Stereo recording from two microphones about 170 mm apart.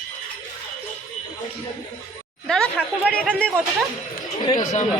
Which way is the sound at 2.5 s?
5° left (ahead or behind).